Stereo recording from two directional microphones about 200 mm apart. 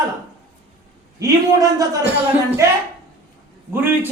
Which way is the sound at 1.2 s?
15° right (ahead or behind).